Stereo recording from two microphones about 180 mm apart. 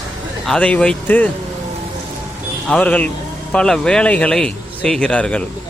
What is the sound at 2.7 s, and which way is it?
A man's voice, 5° left (ahead or behind).